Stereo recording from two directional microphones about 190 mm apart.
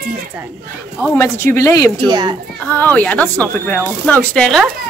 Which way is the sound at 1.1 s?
15° left (ahead or behind).